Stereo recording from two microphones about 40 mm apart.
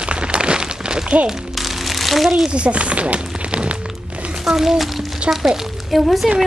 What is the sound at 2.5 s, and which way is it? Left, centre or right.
Speech, right.